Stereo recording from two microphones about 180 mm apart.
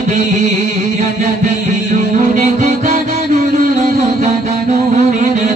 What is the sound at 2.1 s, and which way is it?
Music, 45° right (ahead or behind).